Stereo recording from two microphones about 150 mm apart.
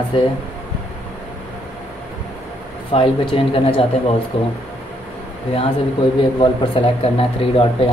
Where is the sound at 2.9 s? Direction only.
35° left (ahead or behind).